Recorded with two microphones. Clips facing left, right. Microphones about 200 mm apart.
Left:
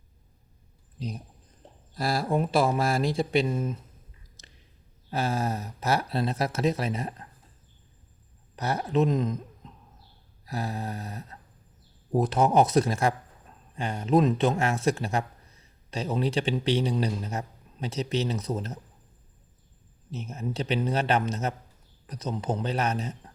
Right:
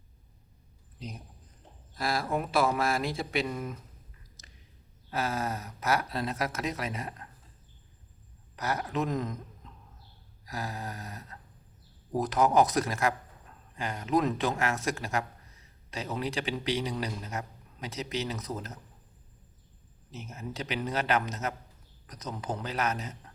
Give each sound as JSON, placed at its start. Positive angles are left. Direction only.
{"t": 0.9, "sound": "speech", "side_deg": 35}
{"t": 4.4, "sound": "a sound", "side_deg": 30}
{"t": 5.1, "sound": "speech", "side_deg": 30}
{"t": 8.5, "sound": "speech", "side_deg": 30}
{"t": 20.1, "sound": "speech", "side_deg": 30}